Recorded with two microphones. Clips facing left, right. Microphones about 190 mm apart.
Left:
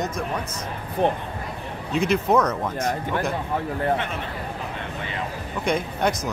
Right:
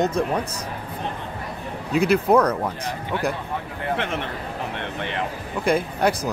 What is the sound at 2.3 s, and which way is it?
Speech, 10° right (ahead or behind).